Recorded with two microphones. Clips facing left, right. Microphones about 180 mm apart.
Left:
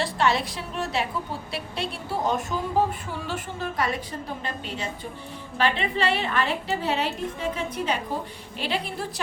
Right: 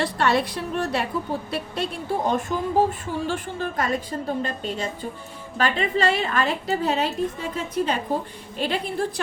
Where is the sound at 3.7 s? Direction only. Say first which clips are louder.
Right 2 dB; 45° right (ahead or behind).